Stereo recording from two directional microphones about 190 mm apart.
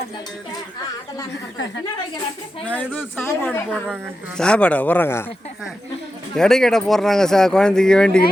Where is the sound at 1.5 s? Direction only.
70° left (ahead or behind).